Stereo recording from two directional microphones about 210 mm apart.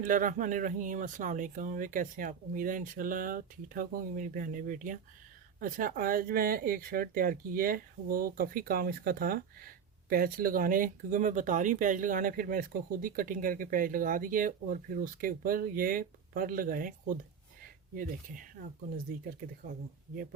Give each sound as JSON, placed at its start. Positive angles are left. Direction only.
{"t": 0.0, "sound": "speech", "side_deg": -40}